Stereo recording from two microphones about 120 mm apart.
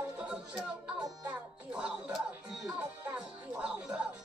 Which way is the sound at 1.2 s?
10° right (ahead or behind).